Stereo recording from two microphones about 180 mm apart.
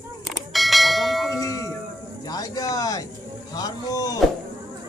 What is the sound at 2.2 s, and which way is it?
Speech, 20° left (ahead or behind).